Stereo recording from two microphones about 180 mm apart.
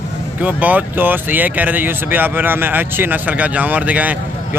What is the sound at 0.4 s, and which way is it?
Speech, 10° right (ahead or behind).